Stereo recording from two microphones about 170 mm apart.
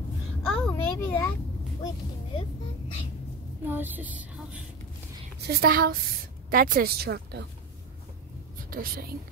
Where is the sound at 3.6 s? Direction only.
10° right (ahead or behind).